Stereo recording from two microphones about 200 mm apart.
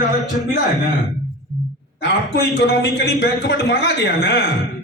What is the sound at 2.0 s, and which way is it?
A man's voice, 55° left (ahead or behind).